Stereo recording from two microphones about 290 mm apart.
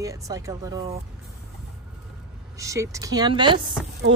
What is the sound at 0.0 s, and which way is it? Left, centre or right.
Speech, centre.